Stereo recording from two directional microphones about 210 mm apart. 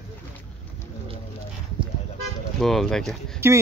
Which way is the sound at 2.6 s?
Centre (ahead or behind).